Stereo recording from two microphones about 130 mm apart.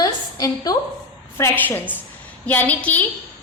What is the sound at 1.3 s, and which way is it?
A woman's voice, 15° left (ahead or behind).